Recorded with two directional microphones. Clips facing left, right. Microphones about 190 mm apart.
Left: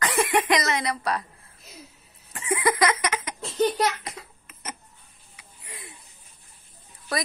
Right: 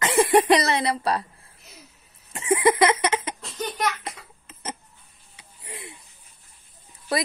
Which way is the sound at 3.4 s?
30° left (ahead or behind).